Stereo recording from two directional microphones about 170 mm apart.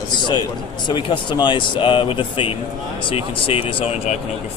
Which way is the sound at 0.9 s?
25° left (ahead or behind).